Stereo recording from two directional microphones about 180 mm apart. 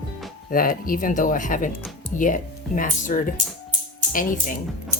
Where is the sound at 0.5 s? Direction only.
50° left (ahead or behind).